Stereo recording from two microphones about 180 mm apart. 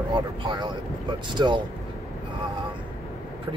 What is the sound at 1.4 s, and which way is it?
Speech, 25° right (ahead or behind).